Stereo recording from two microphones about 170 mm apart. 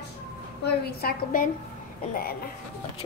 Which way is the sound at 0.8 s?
60° left (ahead or behind).